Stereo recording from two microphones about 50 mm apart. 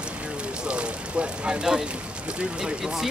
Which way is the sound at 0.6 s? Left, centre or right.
Right.